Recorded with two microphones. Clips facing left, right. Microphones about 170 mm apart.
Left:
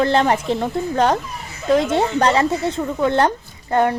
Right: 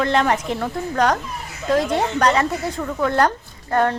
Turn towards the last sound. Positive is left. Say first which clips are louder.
# left 2 dB
turn(degrees=15)  # may be behind; listen again after turning